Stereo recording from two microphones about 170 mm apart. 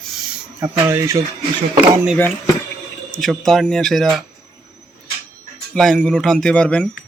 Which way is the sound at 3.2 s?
Centre (ahead or behind).